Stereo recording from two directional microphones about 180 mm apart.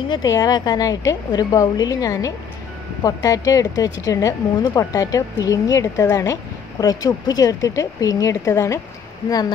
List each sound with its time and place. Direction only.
0.1 s speech: 20° left (ahead or behind)